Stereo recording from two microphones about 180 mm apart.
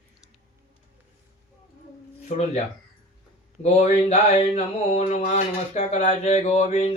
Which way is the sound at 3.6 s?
40° left (ahead or behind).